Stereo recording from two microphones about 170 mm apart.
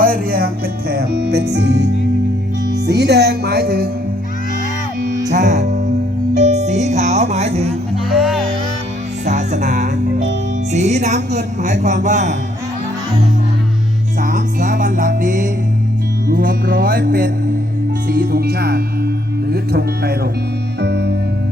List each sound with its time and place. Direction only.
0.0 s music: 55° right (ahead or behind); by 1.9 s 90° right
2.6 s speech: 80° right
5.4 s music: 45° right (ahead or behind)
8.1 s speech: centre (ahead or behind)
9.2 s music: 45° right (ahead or behind)
14.2 s music: 50° right (ahead or behind); by 18.8 s 65° right (ahead or behind)
20.8 s music: 75° right (ahead or behind)